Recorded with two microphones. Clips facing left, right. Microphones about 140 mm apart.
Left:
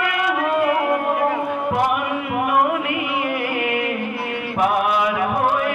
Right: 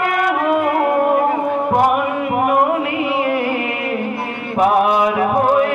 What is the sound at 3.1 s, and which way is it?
Music, 35° right (ahead or behind).